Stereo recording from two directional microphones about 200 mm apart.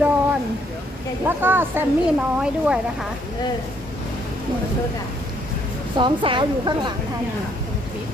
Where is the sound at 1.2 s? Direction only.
10° right (ahead or behind).